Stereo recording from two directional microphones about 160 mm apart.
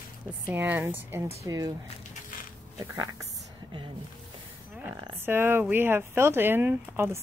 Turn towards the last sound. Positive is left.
turn(degrees=-15)  # may be behind; listen again after turning